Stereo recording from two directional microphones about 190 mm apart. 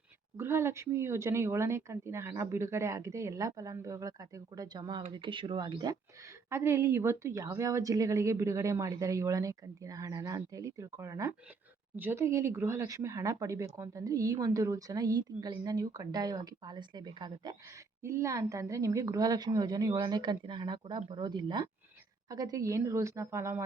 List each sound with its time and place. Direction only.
0.3 s a woman's voice: 15° right (ahead or behind)